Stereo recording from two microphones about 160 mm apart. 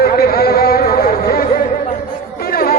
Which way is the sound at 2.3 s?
65° left (ahead or behind).